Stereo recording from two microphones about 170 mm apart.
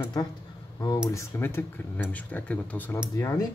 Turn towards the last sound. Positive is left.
turn(degrees=20)  # may be behind; listen again after turning